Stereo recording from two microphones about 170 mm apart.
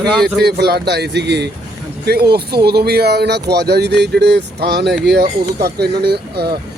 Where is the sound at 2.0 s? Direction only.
70° right (ahead or behind).